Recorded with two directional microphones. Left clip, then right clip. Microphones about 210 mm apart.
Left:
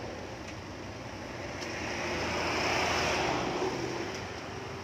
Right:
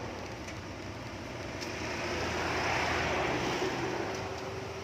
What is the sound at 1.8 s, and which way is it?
Vehicle, 25° left (ahead or behind).